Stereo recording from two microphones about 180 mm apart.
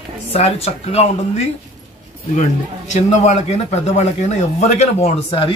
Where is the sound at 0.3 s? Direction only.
35° left (ahead or behind).